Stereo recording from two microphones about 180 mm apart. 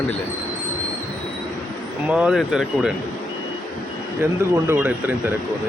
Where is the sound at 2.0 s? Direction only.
5° right (ahead or behind).